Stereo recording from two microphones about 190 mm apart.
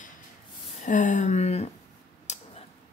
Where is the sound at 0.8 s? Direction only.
40° left (ahead or behind).